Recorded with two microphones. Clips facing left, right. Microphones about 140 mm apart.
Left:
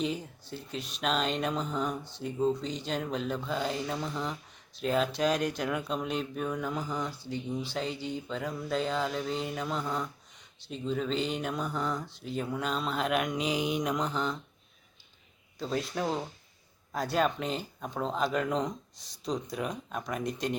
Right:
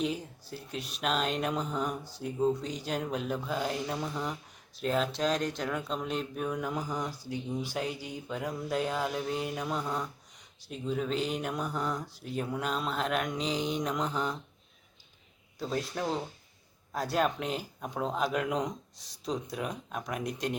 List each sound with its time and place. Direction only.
0.0 s speech: 5° right (ahead or behind)
13.9 s speech: 5° right (ahead or behind)
15.5 s speech: 5° right (ahead or behind)
18.9 s speech: 35° right (ahead or behind)
19.2 s speech: 5° right (ahead or behind)